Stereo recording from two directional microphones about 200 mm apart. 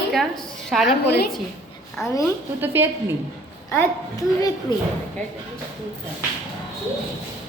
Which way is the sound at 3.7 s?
15° left (ahead or behind).